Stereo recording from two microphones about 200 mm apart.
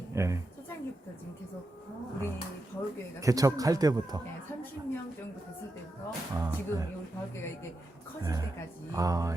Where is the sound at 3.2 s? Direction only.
15° right (ahead or behind).